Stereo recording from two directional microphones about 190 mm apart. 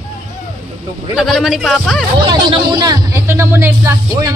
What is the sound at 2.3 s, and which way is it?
Speech, 25° right (ahead or behind).